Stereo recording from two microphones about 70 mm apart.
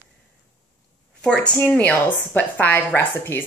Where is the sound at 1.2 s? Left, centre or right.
Centre.